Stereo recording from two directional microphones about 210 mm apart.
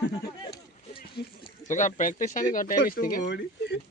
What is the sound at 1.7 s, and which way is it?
Speech, 35° left (ahead or behind).